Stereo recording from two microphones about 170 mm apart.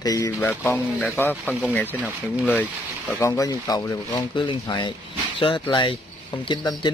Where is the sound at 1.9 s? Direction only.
10° right (ahead or behind).